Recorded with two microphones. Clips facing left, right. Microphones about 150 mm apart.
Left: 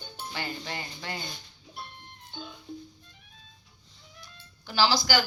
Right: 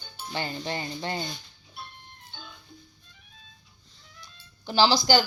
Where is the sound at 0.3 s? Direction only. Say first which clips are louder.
Right 5 dB; 25° right (ahead or behind).